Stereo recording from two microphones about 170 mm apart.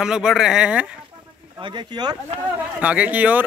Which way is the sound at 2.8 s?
10° right (ahead or behind).